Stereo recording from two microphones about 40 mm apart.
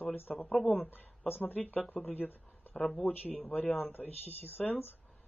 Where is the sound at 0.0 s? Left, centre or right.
Left.